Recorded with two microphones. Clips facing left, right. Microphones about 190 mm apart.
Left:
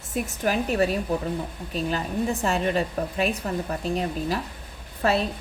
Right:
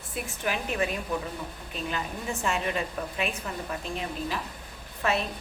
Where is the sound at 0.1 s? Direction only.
40° left (ahead or behind).